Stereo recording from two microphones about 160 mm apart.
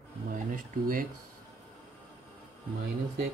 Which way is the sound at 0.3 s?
60° right (ahead or behind).